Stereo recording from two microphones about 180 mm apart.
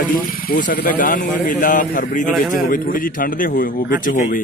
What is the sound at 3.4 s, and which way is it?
Speech, 50° left (ahead or behind).